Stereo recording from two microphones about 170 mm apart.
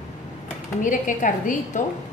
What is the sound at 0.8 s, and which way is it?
A woman's voice, 50° left (ahead or behind).